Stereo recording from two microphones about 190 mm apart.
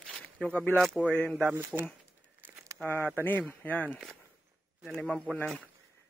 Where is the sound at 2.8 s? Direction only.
10° left (ahead or behind).